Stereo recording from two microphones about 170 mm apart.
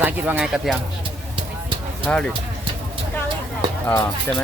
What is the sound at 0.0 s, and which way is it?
Speech, 10° right (ahead or behind).